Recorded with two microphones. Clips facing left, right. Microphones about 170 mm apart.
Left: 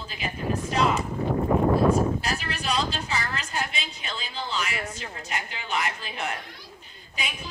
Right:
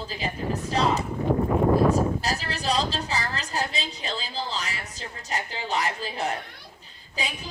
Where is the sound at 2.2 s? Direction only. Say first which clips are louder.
Right 1 dB; 35° right (ahead or behind).